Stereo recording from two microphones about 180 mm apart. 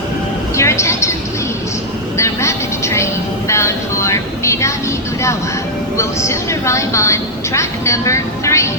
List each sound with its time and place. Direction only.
0.5 s vehicle: 15° left (ahead or behind)
2.1 s vehicle: 15° left (ahead or behind)
6.0 s speech: 15° left (ahead or behind)